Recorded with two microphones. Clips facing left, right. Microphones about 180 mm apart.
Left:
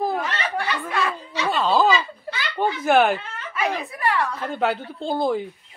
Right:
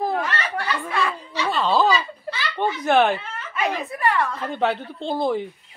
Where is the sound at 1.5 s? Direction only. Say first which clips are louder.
Left 1 dB; centre (ahead or behind).